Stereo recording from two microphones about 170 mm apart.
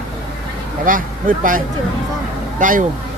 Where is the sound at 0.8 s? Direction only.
55° right (ahead or behind).